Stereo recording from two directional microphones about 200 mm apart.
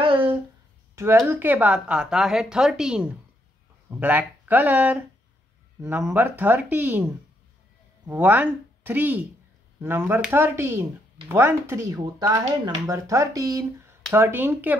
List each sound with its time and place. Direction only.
0.0 s a sound: 25° right (ahead or behind)
0.9 s speech: 15° right (ahead or behind)
8.1 s speech: 10° right (ahead or behind)